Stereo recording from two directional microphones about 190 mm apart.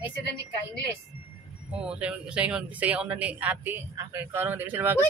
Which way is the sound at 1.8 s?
5° right (ahead or behind).